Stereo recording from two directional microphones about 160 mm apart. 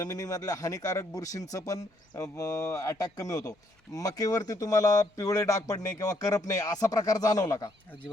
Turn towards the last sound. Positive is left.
turn(degrees=25)  # may be behind; listen again after turning